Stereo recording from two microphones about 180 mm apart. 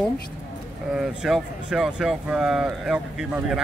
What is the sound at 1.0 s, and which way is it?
Speech, centre (ahead or behind).